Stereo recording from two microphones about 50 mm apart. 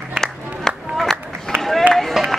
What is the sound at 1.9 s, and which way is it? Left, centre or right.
Run, centre.